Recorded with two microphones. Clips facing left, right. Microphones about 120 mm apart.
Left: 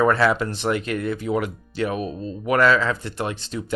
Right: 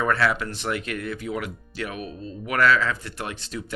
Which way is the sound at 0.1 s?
25° left (ahead or behind).